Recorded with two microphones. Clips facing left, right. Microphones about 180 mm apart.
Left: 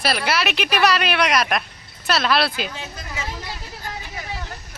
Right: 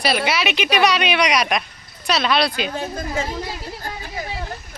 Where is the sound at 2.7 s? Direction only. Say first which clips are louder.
Right 9 dB; 50° right (ahead or behind).